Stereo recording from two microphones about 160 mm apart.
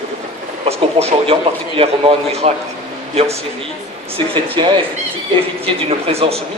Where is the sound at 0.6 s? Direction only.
40° right (ahead or behind).